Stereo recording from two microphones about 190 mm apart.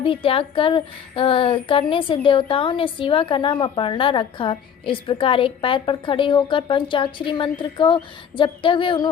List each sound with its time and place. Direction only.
0.0 s a woman's voice: 30° left (ahead or behind)